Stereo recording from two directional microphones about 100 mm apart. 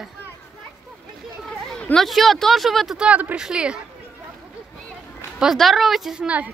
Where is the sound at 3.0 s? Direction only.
15° right (ahead or behind).